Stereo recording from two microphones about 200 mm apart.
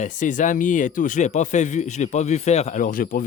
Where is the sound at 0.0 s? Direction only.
40° left (ahead or behind).